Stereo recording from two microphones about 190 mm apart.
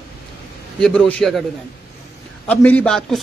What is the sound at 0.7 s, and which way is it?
Speech, 5° left (ahead or behind).